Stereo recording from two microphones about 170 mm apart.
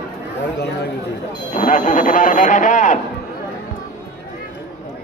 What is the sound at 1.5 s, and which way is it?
Speech, 45° left (ahead or behind).